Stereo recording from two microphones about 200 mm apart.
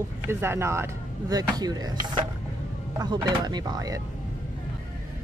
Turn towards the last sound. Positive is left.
turn(degrees=-20)  # may be behind; listen again after turning